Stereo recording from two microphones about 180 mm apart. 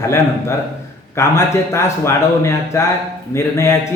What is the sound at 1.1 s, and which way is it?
Speech, 15° left (ahead or behind).